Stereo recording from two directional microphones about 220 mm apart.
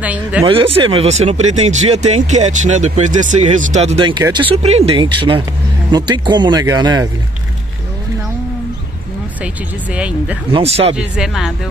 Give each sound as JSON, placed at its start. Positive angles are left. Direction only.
{"t": 0.0, "sound": "speech", "side_deg": -5}
{"t": 0.5, "sound": "speech", "side_deg": -25}
{"t": 9.9, "sound": "speech", "side_deg": -5}
{"t": 10.5, "sound": "speech", "side_deg": -25}
{"t": 11.0, "sound": "speech", "side_deg": 0}